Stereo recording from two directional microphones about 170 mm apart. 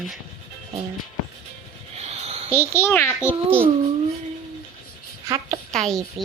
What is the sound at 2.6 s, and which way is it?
Speech, 15° left (ahead or behind).